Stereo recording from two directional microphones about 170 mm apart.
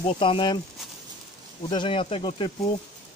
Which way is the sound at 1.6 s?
30° left (ahead or behind).